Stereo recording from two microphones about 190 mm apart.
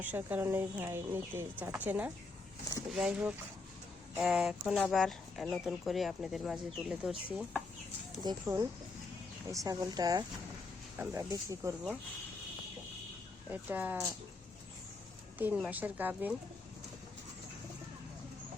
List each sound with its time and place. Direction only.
0.0 s speech: 10° right (ahead or behind)
8.2 s speech: 20° right (ahead or behind)
13.5 s speech: 10° right (ahead or behind)
15.4 s speech: 10° right (ahead or behind)